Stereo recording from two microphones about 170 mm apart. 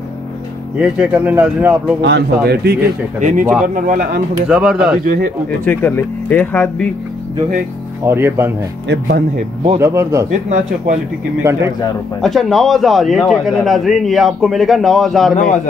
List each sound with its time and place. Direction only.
0.7 s speech: 5° right (ahead or behind)
2.0 s speech: 80° right
3.2 s speech: 50° right (ahead or behind)
4.5 s a man's voice: 5° right (ahead or behind)
5.0 s speech: 55° right (ahead or behind)
5.7 s speech: 10° left (ahead or behind)
8.0 s speech: 15° right (ahead or behind)
8.8 s speech: 80° right
9.8 s speech: 15° right (ahead or behind)
12.2 s a man's voice: centre (ahead or behind)
15.3 s a man's voice: 45° left (ahead or behind)